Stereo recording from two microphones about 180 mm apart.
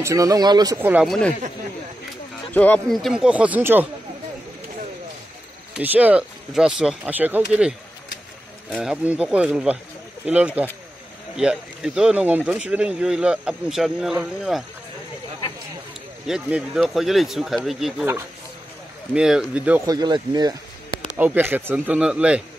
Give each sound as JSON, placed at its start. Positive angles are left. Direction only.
{"t": 0.0, "sound": "speech", "side_deg": -20}
{"t": 0.7, "sound": "speech", "side_deg": -10}
{"t": 1.0, "sound": "speech", "side_deg": 0}
{"t": 2.5, "sound": "speech", "side_deg": 10}
{"t": 5.8, "sound": "speech", "side_deg": -10}
{"t": 16.3, "sound": "speech", "side_deg": -5}
{"t": 19.1, "sound": "speech", "side_deg": -5}
{"t": 19.9, "sound": "speech", "side_deg": -25}
{"t": 21.2, "sound": "speech", "side_deg": -10}